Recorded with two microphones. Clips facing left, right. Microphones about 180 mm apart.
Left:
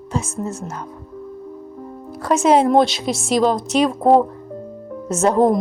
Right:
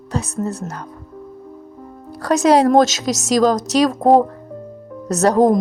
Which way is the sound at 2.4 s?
35° right (ahead or behind).